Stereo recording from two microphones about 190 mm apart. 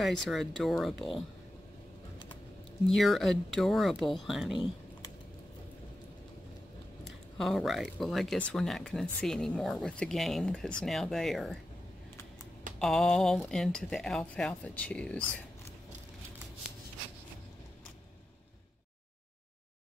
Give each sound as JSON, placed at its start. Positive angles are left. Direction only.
{"t": 0.0, "sound": "speech", "side_deg": 0}
{"t": 2.9, "sound": "speech", "side_deg": 0}
{"t": 7.3, "sound": "speech", "side_deg": 0}
{"t": 12.7, "sound": "speech", "side_deg": 5}